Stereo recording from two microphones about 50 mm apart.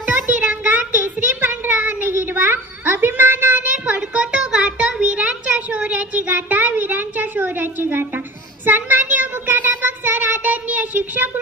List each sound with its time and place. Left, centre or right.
0.3 s child singing: right
2.0 s a sound: right
8.6 s child singing: right